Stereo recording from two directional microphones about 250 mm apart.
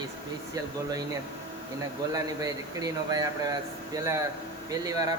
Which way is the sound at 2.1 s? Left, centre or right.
Centre.